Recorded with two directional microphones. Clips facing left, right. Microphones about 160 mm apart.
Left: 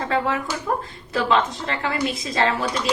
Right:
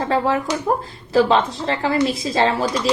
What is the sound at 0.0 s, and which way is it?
A woman's voice, 30° right (ahead or behind).